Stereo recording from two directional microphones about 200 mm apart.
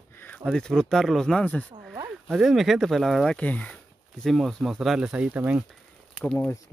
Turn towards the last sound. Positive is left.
turn(degrees=5)  # may be behind; listen again after turning